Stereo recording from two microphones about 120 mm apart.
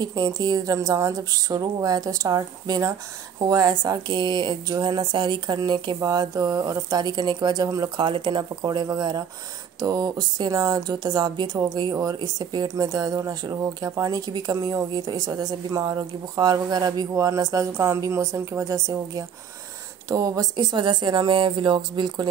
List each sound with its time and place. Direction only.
0.0 s speech: 35° right (ahead or behind)